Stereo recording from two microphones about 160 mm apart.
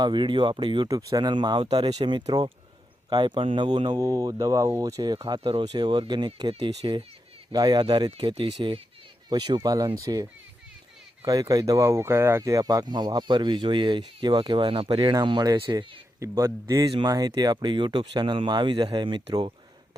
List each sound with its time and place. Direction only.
0.0 s speech: 30° right (ahead or behind)
16.2 s speech: 20° right (ahead or behind)